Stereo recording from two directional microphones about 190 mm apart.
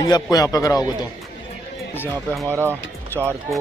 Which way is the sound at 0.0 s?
20° left (ahead or behind).